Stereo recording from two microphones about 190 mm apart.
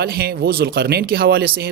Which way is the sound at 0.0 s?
55° right (ahead or behind).